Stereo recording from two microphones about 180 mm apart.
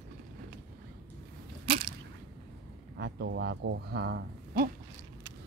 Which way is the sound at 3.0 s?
70° right (ahead or behind).